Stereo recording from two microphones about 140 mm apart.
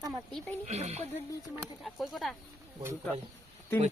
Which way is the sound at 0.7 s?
50° right (ahead or behind).